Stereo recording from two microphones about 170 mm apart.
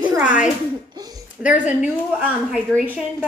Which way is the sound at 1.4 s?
10° right (ahead or behind).